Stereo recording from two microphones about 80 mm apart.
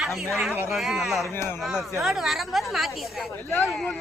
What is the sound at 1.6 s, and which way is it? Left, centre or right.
A woman's voice, centre.